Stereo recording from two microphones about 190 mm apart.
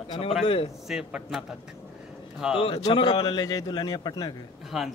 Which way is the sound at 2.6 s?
25° left (ahead or behind).